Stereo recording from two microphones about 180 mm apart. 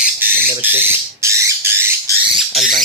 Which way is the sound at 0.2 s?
10° right (ahead or behind).